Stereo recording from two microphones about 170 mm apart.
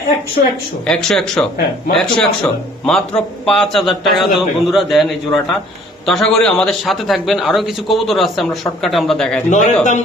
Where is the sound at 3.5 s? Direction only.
Centre (ahead or behind).